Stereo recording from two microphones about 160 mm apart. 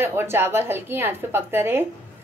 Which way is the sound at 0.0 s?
15° right (ahead or behind).